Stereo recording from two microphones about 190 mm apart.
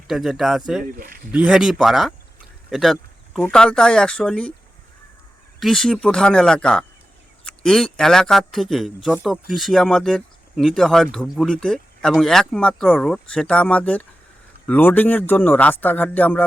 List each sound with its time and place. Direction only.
0.1 s speech: centre (ahead or behind)
0.9 s speech: 50° right (ahead or behind)
1.3 s speech: 5° right (ahead or behind)
5.5 s speech: centre (ahead or behind)